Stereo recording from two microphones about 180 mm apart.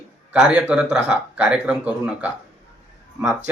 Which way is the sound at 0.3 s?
5° right (ahead or behind).